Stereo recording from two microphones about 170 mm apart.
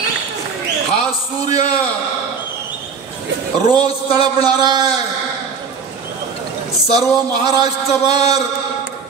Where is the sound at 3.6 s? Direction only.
25° right (ahead or behind).